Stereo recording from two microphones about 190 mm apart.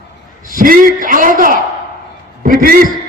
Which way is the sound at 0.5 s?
45° right (ahead or behind).